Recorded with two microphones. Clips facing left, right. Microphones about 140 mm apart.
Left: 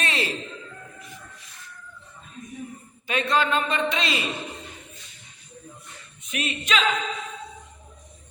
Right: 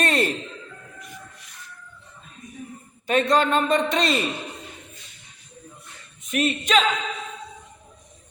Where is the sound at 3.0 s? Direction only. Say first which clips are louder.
Right 4 dB; 45° right (ahead or behind).